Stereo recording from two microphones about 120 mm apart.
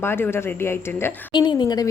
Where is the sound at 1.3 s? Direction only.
40° left (ahead or behind).